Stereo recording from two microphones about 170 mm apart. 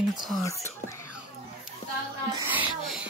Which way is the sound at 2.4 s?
5° right (ahead or behind).